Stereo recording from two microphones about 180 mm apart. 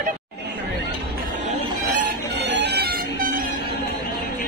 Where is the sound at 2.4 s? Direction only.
70° right (ahead or behind).